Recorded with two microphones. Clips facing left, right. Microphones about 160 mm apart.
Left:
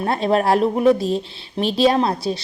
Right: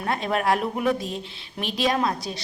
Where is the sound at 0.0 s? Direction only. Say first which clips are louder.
Left 6 dB; 30° left (ahead or behind).